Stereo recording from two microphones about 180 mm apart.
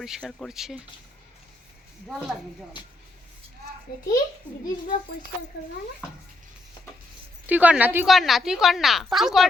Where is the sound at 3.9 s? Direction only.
60° left (ahead or behind).